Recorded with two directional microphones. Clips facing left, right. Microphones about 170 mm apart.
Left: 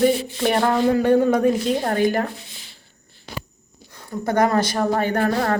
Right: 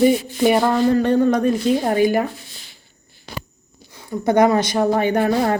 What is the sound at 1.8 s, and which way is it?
Speech, 10° right (ahead or behind).